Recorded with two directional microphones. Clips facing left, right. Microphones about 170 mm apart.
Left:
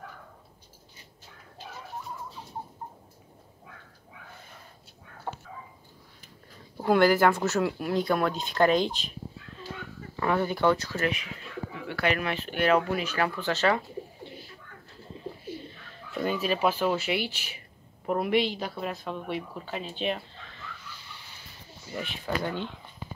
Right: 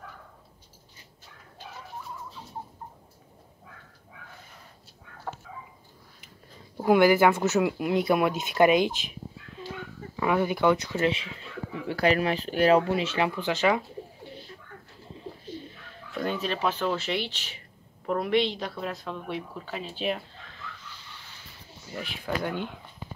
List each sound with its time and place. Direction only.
6.8 s speech: 10° right (ahead or behind)
10.1 s speech: 10° right (ahead or behind)
16.1 s a woman's voice: 5° left (ahead or behind)
21.9 s a woman's voice: centre (ahead or behind)